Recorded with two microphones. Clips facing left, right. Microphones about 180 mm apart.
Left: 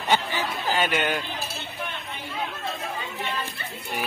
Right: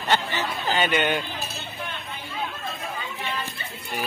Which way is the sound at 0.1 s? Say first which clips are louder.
Even; 10° left (ahead or behind).